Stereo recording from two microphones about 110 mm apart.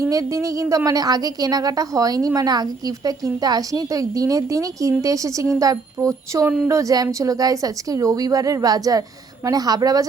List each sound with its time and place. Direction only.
0.0 s a woman's voice: 30° right (ahead or behind)